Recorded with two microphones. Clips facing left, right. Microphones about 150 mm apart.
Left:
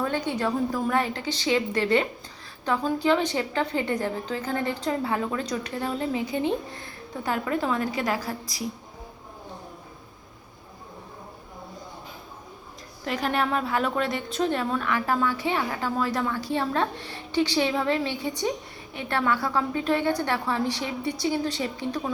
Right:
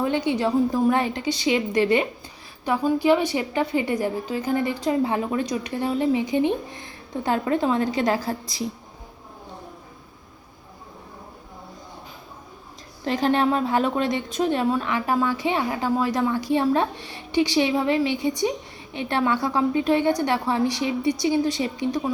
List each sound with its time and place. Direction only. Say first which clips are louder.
0.0 s a woman's voice: right 4 dB; 15° right (ahead or behind)
13.1 s a woman's voice: right 5 dB; 25° right (ahead or behind)